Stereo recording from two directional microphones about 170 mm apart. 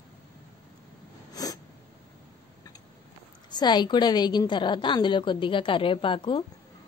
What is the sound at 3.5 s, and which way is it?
A woman's voice, 25° left (ahead or behind).